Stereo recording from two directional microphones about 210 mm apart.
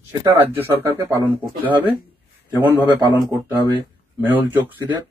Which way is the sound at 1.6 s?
25° right (ahead or behind).